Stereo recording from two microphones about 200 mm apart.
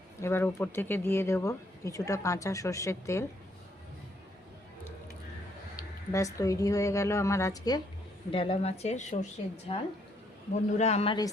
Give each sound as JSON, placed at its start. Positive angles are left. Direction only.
{"t": 0.2, "sound": "speech", "side_deg": 10}
{"t": 5.7, "sound": "speech", "side_deg": 15}